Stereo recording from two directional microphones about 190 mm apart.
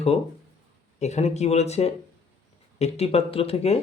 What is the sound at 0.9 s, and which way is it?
Speech, 35° left (ahead or behind).